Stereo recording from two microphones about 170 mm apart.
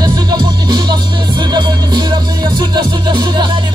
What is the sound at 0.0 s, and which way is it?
Music, 25° right (ahead or behind).